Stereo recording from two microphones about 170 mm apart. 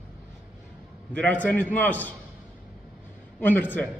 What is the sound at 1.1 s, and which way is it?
A woman's voice, 10° left (ahead or behind).